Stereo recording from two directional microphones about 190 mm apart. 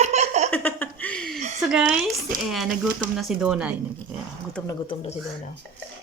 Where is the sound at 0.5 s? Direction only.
10° left (ahead or behind).